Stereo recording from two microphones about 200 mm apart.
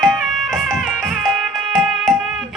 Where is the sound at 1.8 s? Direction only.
Centre (ahead or behind).